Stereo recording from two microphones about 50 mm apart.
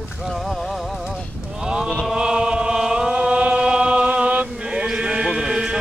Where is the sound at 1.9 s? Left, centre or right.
Centre.